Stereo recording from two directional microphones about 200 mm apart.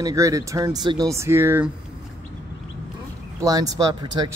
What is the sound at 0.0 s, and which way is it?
Speech, 15° right (ahead or behind).